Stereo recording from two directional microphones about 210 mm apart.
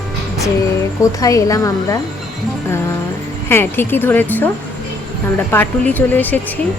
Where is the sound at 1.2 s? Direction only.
15° left (ahead or behind).